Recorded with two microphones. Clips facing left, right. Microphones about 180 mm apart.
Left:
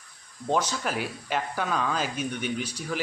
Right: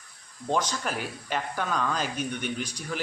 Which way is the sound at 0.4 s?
10° left (ahead or behind).